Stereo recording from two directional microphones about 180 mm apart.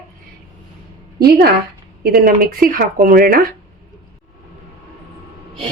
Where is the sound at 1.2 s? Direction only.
55° right (ahead or behind).